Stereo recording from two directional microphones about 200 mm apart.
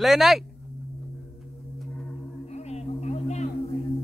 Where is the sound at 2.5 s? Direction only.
30° left (ahead or behind).